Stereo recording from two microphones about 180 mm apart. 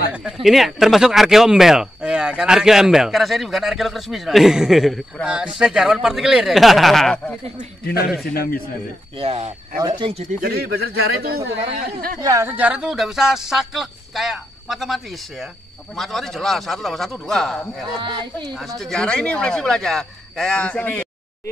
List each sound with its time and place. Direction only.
0.1 s speech: 5° right (ahead or behind)
7.8 s a man's voice: 60° left (ahead or behind)
9.2 s speech: 30° right (ahead or behind)
10.4 s speech: 60° right (ahead or behind)
12.2 s speech: 15° right (ahead or behind); by 21.0 s 5° left (ahead or behind)